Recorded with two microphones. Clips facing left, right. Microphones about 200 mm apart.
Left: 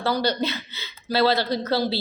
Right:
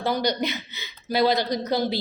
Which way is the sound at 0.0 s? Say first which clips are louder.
Left 1 dB; 15° right (ahead or behind).